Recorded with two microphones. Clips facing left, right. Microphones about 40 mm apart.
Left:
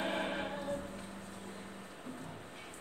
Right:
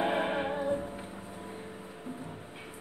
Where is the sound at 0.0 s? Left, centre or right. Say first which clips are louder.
Right 7 dB; centre.